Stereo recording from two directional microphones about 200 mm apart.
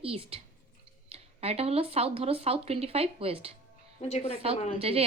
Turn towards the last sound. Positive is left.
turn(degrees=-30)  # may be behind; listen again after turning